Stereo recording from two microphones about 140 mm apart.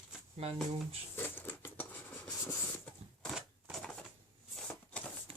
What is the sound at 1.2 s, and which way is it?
Scissors, 15° left (ahead or behind).